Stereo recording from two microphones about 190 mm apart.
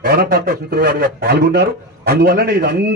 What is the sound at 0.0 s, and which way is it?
A man's voice, 50° right (ahead or behind).